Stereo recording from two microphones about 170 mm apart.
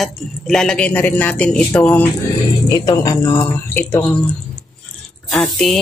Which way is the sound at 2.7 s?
20° left (ahead or behind).